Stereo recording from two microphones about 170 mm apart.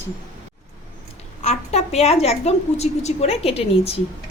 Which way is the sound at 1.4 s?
40° left (ahead or behind).